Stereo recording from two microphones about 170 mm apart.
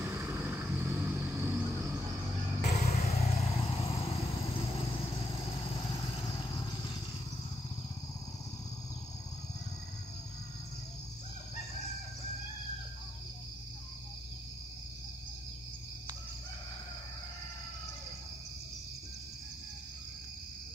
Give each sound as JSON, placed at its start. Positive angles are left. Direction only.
{"t": 0.0, "sound": "vehicle", "side_deg": -10}
{"t": 2.6, "sound": "vehicle", "side_deg": 40}